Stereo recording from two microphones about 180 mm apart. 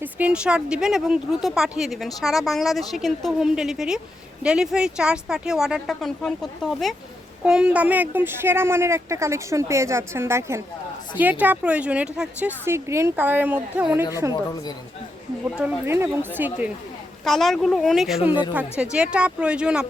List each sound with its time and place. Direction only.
0.0 s a woman's voice: 10° right (ahead or behind)
15.5 s a woman's voice: 10° right (ahead or behind)
17.2 s speech: centre (ahead or behind)